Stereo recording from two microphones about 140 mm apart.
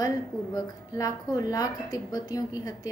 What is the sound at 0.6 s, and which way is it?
A woman's voice, 25° left (ahead or behind).